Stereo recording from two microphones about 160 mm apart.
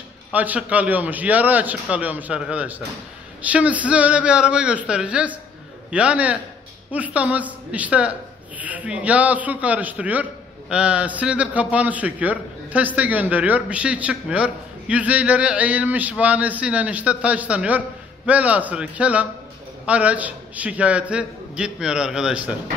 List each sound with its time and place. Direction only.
0.3 s a man's voice: 10° right (ahead or behind)